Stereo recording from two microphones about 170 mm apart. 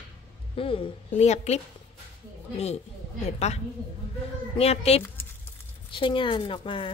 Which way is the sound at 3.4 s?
40° left (ahead or behind).